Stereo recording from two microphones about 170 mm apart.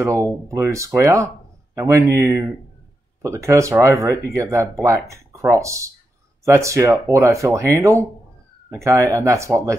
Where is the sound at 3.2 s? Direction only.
15° right (ahead or behind).